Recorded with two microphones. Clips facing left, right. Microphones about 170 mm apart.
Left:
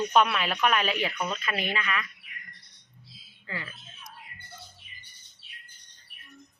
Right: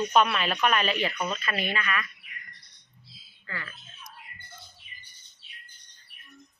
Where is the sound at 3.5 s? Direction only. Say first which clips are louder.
Left 2 dB; 20° left (ahead or behind).